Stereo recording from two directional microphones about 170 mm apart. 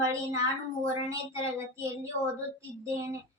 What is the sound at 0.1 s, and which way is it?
Speech, 15° right (ahead or behind).